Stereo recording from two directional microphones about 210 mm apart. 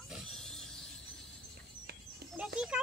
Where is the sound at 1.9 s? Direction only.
50° right (ahead or behind).